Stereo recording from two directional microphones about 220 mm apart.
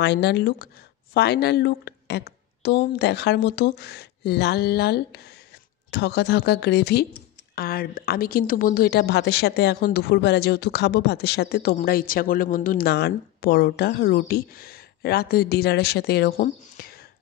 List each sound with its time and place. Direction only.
0.0 s a woman's voice: 50° left (ahead or behind)